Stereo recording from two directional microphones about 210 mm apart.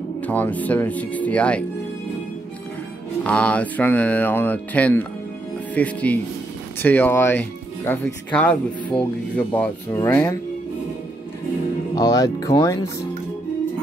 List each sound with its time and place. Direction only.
0.3 s speech: 5° left (ahead or behind)
3.3 s speech: 5° left (ahead or behind)
11.9 s speech: 20° left (ahead or behind)